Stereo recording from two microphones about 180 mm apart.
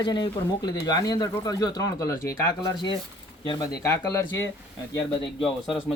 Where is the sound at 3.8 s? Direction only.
15° left (ahead or behind).